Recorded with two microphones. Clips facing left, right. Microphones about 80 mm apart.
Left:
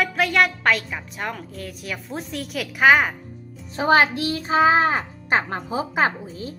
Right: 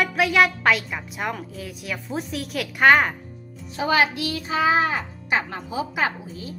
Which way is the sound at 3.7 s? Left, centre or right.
Left.